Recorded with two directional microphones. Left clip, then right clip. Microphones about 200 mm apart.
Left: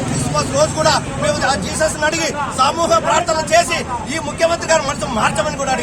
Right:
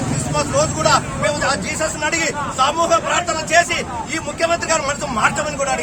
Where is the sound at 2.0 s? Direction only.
Centre (ahead or behind).